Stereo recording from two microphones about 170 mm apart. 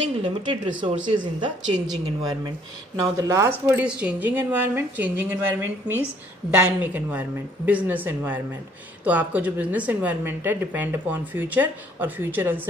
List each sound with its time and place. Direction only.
0.2 s speech: 30° right (ahead or behind)
3.0 s speech: 15° right (ahead or behind)